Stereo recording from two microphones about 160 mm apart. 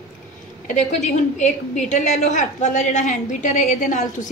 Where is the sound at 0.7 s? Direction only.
45° left (ahead or behind).